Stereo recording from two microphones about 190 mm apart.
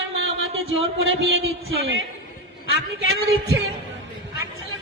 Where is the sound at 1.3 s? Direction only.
90° right.